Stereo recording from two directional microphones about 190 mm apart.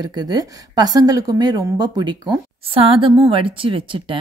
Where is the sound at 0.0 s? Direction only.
20° right (ahead or behind).